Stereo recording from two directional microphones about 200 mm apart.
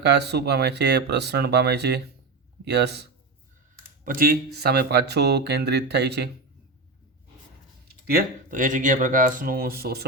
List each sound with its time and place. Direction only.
0.0 s speech: 55° right (ahead or behind)
4.0 s speech: 45° right (ahead or behind)
7.9 s speech: 50° right (ahead or behind)